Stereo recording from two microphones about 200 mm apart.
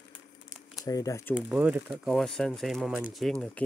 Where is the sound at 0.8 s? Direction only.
15° left (ahead or behind).